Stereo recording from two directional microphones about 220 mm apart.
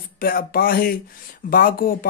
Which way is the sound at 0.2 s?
40° left (ahead or behind).